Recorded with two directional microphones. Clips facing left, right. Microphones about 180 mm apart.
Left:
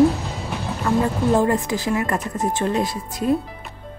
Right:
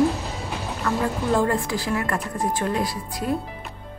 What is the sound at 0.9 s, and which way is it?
Speech, 20° left (ahead or behind).